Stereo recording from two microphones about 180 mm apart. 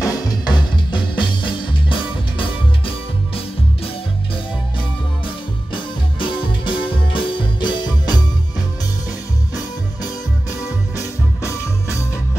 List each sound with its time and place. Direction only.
0.0 s music: 25° left (ahead or behind)
6.1 s music: 25° left (ahead or behind)
11.4 s music: 15° left (ahead or behind)